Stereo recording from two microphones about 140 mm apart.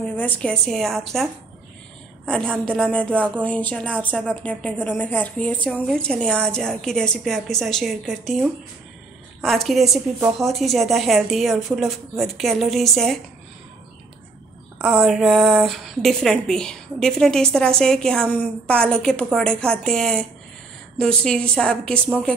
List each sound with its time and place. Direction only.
0.0 s a woman's voice: 10° left (ahead or behind)
14.9 s a woman's voice: centre (ahead or behind)